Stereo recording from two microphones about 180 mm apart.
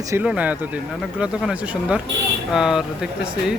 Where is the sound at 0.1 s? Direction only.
5° right (ahead or behind).